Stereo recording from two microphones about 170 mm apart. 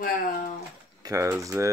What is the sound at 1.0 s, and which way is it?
Speech, 20° right (ahead or behind).